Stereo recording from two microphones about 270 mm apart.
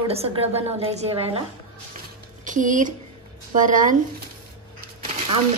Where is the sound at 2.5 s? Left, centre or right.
Right.